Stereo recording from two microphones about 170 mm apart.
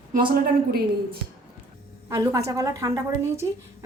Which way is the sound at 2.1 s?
20° right (ahead or behind).